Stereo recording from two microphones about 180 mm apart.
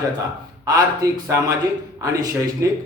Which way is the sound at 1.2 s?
15° right (ahead or behind).